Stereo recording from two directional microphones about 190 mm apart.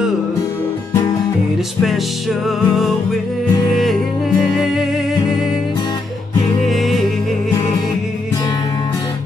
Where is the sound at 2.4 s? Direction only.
Centre (ahead or behind).